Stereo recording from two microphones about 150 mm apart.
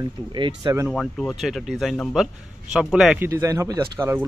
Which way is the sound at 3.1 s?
15° right (ahead or behind).